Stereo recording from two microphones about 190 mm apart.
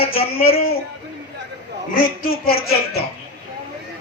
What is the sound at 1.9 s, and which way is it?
A woman's voice, 50° left (ahead or behind).